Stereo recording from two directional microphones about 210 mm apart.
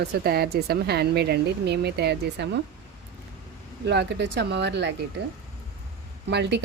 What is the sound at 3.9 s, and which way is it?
A woman's voice, 55° right (ahead or behind).